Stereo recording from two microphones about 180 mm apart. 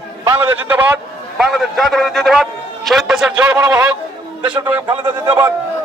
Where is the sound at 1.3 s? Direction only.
Centre (ahead or behind).